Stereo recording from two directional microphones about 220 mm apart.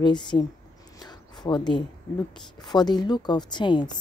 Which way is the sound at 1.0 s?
20° left (ahead or behind).